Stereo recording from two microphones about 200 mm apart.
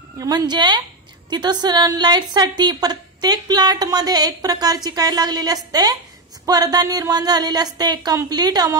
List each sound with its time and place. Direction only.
0.2 s a woman's voice: 20° right (ahead or behind)